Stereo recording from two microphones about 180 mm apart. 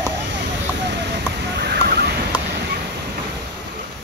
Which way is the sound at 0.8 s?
65° right (ahead or behind).